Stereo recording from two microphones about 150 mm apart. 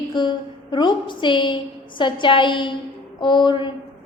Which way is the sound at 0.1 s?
30° left (ahead or behind).